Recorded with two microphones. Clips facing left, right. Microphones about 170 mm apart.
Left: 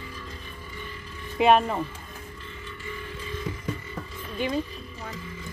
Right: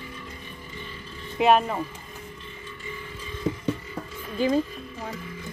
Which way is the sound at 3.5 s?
40° right (ahead or behind).